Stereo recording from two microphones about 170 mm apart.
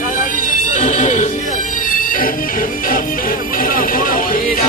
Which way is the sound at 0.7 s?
45° left (ahead or behind).